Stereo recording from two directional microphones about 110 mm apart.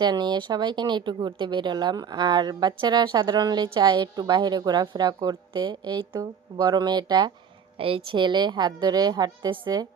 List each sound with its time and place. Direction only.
0.0 s a woman's voice: 40° right (ahead or behind)
7.8 s a woman's voice: 55° right (ahead or behind); by 9.8 s 40° right (ahead or behind)